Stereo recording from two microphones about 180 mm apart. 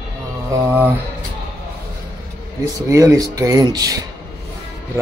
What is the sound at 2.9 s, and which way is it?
Speech, 15° right (ahead or behind).